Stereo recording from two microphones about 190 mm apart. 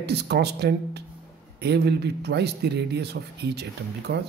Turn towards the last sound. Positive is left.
turn(degrees=-60)  # may be behind; listen again after turning